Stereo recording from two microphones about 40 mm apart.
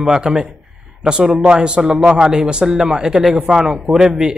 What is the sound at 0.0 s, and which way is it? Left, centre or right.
A man's voice, centre.